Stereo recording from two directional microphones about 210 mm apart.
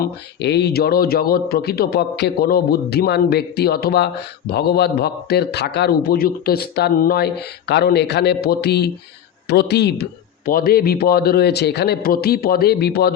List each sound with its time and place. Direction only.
0.0 s a man's voice: 55° left (ahead or behind)